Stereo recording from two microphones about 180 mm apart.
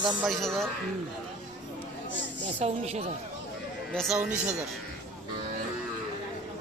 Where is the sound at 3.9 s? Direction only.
5° right (ahead or behind).